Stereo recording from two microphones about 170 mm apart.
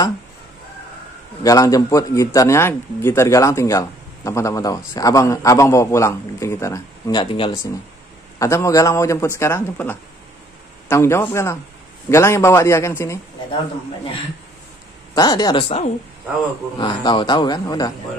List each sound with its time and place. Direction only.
1.4 s speech: 20° left (ahead or behind)
8.4 s a man's voice: 20° left (ahead or behind)
15.1 s speech: 25° left (ahead or behind)
16.7 s speech: 30° left (ahead or behind)